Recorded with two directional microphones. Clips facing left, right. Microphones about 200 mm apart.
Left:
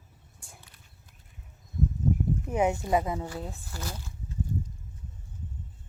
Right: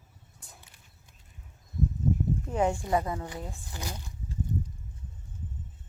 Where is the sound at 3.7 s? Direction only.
15° right (ahead or behind).